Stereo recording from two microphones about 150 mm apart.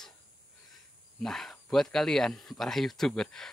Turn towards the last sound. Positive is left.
turn(degrees=5)  # may be behind; listen again after turning